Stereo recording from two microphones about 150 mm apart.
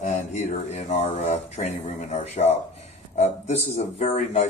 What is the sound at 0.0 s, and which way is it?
A man's voice, 50° left (ahead or behind).